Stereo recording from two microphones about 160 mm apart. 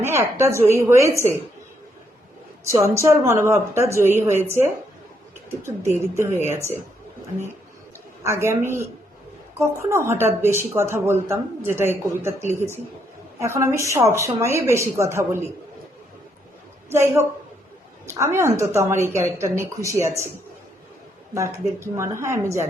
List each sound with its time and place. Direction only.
0.0 s a woman's voice: 15° right (ahead or behind)
2.6 s speech: 15° right (ahead or behind)
5.5 s speech: 15° right (ahead or behind)
8.2 s speech: 15° right (ahead or behind)
16.9 s speech: 15° right (ahead or behind)
21.8 s speech: 15° right (ahead or behind)